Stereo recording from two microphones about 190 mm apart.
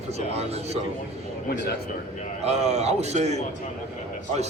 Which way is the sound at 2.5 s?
35° right (ahead or behind).